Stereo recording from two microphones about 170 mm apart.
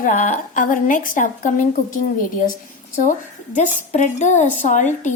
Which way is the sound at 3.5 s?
45° left (ahead or behind).